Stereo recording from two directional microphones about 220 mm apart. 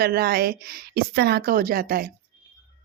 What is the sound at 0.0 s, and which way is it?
Speech, 45° right (ahead or behind).